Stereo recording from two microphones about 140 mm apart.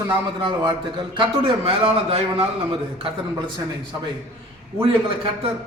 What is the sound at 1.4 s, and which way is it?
A man's voice, 45° right (ahead or behind).